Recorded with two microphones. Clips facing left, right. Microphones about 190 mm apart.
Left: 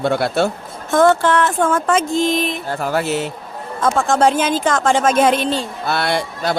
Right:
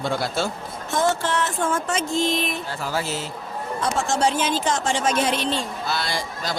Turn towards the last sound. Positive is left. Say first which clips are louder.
# left 8 dB
turn(degrees=60)  # may be behind; listen again after turning